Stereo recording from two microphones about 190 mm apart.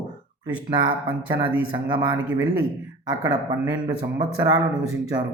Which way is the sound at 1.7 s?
25° right (ahead or behind).